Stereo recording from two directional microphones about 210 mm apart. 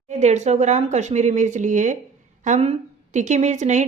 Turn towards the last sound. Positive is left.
turn(degrees=-35)  # may be behind; listen again after turning